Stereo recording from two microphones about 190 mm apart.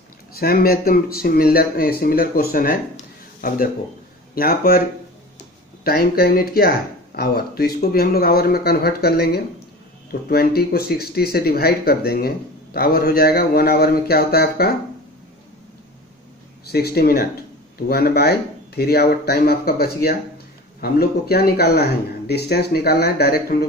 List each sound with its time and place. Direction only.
0.4 s speech: 50° left (ahead or behind)
5.9 s speech: 55° left (ahead or behind)
16.7 s speech: 55° left (ahead or behind)